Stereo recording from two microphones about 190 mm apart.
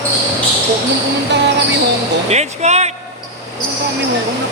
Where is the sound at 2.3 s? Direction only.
35° right (ahead or behind).